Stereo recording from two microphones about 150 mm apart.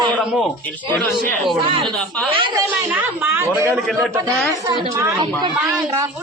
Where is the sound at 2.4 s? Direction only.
30° right (ahead or behind).